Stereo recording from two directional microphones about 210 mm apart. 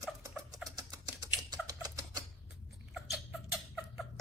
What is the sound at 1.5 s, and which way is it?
Tick-tock, 20° right (ahead or behind).